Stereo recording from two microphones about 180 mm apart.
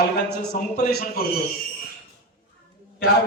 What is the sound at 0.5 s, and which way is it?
Speech, 55° left (ahead or behind).